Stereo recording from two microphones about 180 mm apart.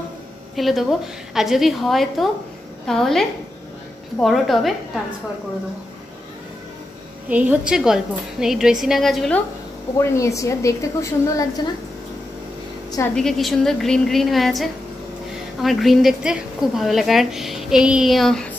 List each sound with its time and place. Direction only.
0.6 s a woman's voice: centre (ahead or behind)
7.2 s a woman's voice: 10° right (ahead or behind)
9.9 s a woman's voice: 15° left (ahead or behind)
13.1 s a woman's voice: centre (ahead or behind)